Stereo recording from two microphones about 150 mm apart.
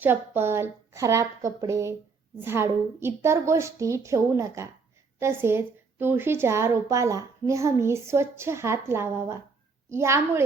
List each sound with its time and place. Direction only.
0.0 s a woman's voice: 15° right (ahead or behind)